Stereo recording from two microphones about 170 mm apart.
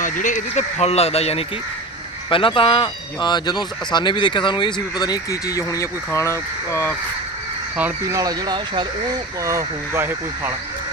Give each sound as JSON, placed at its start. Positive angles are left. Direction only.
{"t": 0.0, "sound": "speech", "side_deg": 50}
{"t": 7.8, "sound": "speech", "side_deg": -10}
{"t": 8.1, "sound": "speech", "side_deg": -20}
{"t": 9.4, "sound": "speech", "side_deg": -15}